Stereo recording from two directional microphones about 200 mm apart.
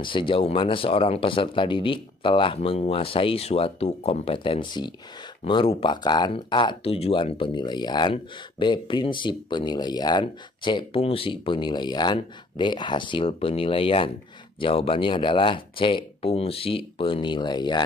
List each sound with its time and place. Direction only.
0.0 s speech: 25° left (ahead or behind)